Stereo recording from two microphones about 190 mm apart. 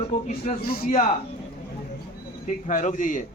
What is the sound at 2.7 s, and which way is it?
Speech, 40° left (ahead or behind).